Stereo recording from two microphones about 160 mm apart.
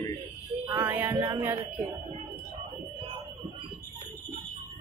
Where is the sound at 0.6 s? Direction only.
15° right (ahead or behind).